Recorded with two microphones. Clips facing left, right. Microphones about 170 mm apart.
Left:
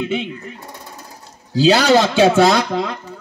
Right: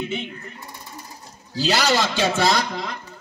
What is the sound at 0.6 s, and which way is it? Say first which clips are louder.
Sewing machine: left 3 dB; 65° left (ahead or behind).